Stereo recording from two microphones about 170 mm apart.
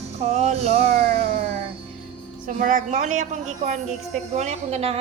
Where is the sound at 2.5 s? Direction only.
50° right (ahead or behind).